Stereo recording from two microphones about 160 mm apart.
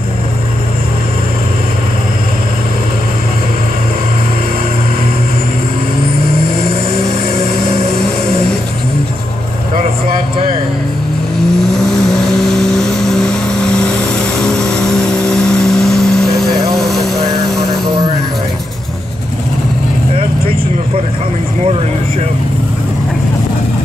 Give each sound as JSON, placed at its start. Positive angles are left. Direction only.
{"t": 11.9, "sound": "vehicle", "side_deg": 0}